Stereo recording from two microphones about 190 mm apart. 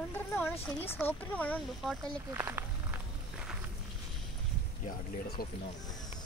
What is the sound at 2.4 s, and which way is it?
Speech, 15° right (ahead or behind).